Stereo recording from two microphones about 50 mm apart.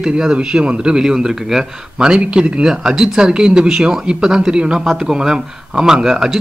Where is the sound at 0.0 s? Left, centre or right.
Centre.